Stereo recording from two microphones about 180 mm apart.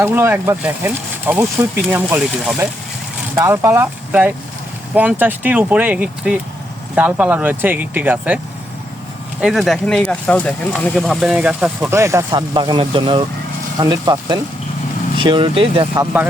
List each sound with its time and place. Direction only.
0.0 s speech: 10° right (ahead or behind)
9.4 s speech: centre (ahead or behind); by 15.9 s 30° right (ahead or behind)